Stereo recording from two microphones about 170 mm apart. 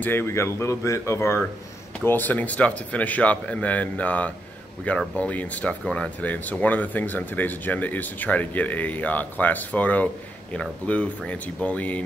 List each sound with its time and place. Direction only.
0.0 s speech: 15° left (ahead or behind)